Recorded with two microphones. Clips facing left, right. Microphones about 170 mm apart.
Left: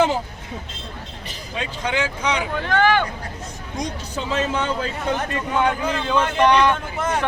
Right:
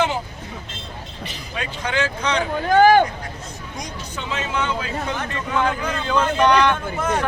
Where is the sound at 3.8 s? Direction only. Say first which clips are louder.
Left 6 dB; 35° left (ahead or behind).